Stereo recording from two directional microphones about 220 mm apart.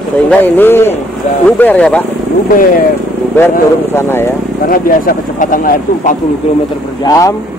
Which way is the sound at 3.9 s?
10° left (ahead or behind).